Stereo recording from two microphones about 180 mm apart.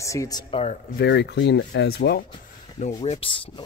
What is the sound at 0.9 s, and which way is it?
Speech, 75° left (ahead or behind).